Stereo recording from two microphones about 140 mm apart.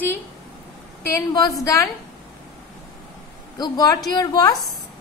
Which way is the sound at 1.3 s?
25° left (ahead or behind).